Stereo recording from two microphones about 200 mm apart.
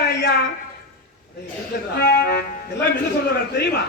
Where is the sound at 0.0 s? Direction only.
55° left (ahead or behind).